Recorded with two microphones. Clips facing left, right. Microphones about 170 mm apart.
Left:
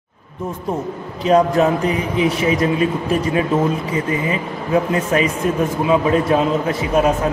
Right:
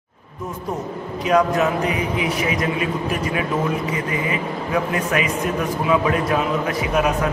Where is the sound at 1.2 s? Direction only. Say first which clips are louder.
Left 4 dB; 30° left (ahead or behind).